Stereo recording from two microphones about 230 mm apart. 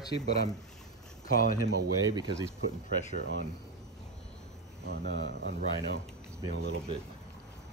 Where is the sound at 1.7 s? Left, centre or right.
Right.